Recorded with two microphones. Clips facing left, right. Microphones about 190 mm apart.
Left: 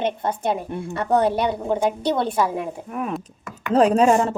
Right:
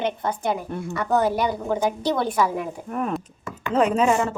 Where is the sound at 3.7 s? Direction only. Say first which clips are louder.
Left 4 dB; 35° left (ahead or behind).